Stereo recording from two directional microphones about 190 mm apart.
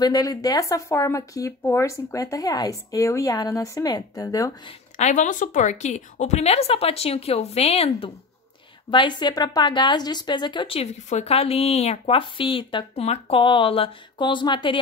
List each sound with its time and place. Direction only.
0.0 s speech: 20° left (ahead or behind)
4.9 s a woman's voice: 40° left (ahead or behind); by 14.8 s 25° left (ahead or behind)